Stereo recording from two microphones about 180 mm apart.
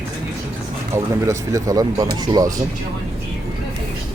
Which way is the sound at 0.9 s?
20° right (ahead or behind).